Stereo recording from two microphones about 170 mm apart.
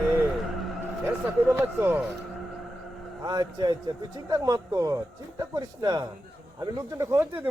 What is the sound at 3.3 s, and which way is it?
A man's voice, 25° right (ahead or behind).